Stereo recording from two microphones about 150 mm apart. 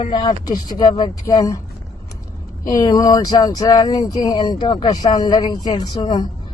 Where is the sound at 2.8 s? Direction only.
30° left (ahead or behind).